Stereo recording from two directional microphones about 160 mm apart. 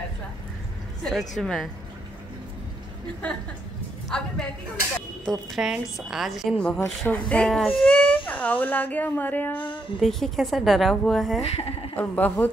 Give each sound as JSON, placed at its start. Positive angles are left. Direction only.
{"t": 1.0, "sound": "a woman's voice", "side_deg": 0}
{"t": 4.1, "sound": "a woman's voice", "side_deg": 5}
{"t": 11.4, "sound": "speech", "side_deg": 40}
{"t": 12.0, "sound": "a woman's voice", "side_deg": 10}